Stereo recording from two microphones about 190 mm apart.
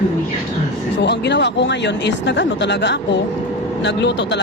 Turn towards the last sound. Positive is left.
turn(degrees=65)  # may be behind; listen again after turning